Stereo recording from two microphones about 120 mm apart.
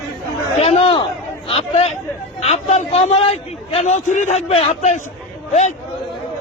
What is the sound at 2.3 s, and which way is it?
A man's voice, 60° left (ahead or behind).